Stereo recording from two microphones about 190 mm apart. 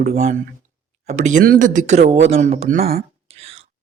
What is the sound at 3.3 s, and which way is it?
Whispering, 30° right (ahead or behind).